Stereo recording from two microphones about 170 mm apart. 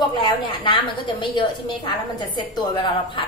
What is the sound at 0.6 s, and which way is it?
A woman's voice, 30° left (ahead or behind).